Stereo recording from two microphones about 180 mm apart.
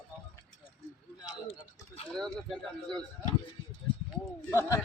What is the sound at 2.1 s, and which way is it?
Speech, centre (ahead or behind).